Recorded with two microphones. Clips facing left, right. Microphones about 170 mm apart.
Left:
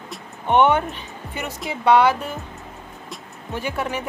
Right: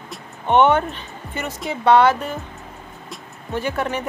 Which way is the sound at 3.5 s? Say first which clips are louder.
Right 3 dB; 10° left (ahead or behind).